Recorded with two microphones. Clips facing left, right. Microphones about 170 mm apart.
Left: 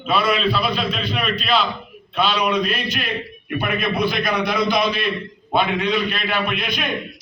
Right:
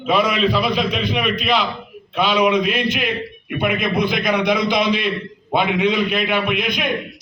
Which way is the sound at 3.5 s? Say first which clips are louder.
Right 2 dB; 20° right (ahead or behind).